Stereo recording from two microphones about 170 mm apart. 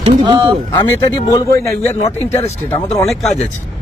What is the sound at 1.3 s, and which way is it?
A man's voice, 20° left (ahead or behind).